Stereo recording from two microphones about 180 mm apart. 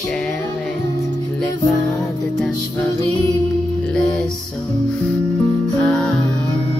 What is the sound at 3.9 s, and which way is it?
Music, centre (ahead or behind).